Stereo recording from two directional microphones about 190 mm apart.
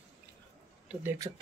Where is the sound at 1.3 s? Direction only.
15° right (ahead or behind).